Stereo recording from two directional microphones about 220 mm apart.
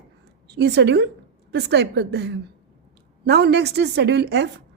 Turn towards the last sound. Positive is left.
turn(degrees=-50)  # may be behind; listen again after turning